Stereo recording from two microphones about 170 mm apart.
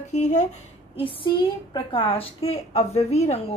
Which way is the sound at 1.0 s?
30° left (ahead or behind).